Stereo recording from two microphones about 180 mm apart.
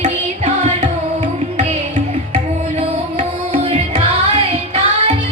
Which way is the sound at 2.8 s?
35° right (ahead or behind).